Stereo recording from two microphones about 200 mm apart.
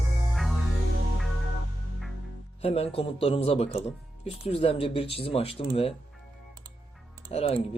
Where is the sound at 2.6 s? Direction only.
30° left (ahead or behind).